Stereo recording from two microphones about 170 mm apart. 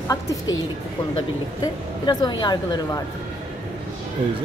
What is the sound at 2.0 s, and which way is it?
A woman's voice, 25° left (ahead or behind).